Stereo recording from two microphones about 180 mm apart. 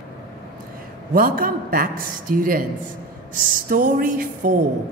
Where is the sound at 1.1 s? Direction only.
50° right (ahead or behind).